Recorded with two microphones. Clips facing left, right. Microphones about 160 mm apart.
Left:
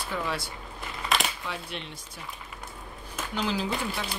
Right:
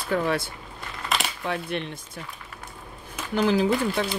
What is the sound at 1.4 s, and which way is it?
Speech, 55° right (ahead or behind).